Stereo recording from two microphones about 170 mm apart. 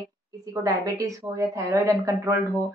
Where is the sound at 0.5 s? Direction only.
20° right (ahead or behind).